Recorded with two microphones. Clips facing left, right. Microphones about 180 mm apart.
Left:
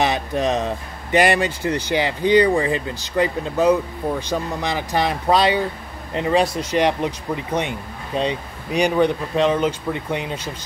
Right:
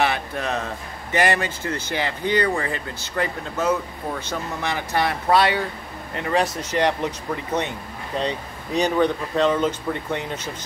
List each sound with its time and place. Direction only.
0.0 s speech: 20° left (ahead or behind)